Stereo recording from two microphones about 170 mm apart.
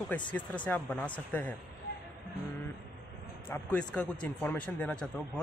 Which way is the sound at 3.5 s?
5° left (ahead or behind).